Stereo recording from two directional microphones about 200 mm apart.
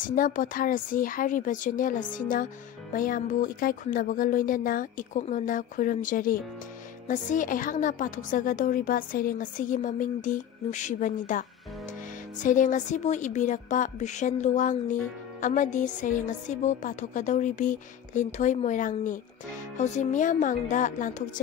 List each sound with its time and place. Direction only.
0.0 s a woman's voice: 40° left (ahead or behind)
12.4 s a woman's voice: 40° left (ahead or behind)